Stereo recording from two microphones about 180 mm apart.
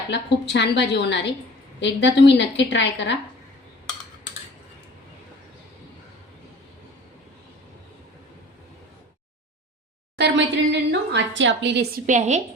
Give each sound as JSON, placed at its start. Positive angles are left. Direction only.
{"t": 0.1, "sound": "a woman's voice", "side_deg": 70}
{"t": 10.2, "sound": "a sound", "side_deg": -75}
{"t": 12.0, "sound": "a woman's voice", "side_deg": -40}